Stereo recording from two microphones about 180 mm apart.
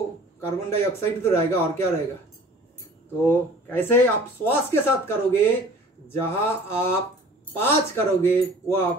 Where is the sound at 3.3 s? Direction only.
10° left (ahead or behind).